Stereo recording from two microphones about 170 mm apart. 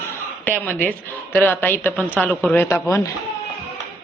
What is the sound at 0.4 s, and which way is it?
Speech, 10° left (ahead or behind).